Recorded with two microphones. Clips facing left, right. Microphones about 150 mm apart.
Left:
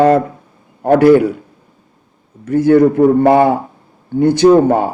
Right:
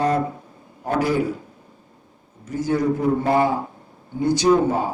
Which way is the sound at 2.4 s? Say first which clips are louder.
Left 12 dB; 60° left (ahead or behind).